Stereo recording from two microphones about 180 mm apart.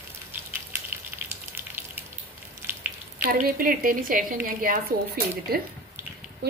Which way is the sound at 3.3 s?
50° right (ahead or behind).